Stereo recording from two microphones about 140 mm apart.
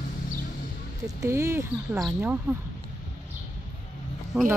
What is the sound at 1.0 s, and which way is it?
Speech, 20° right (ahead or behind).